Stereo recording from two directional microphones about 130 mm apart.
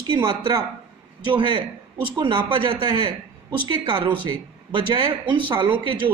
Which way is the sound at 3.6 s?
40° right (ahead or behind).